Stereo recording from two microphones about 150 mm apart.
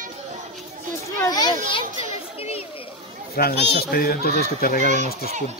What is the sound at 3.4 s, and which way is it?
Speech, 90° left.